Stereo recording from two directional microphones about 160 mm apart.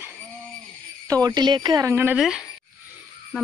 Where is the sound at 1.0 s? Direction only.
25° right (ahead or behind).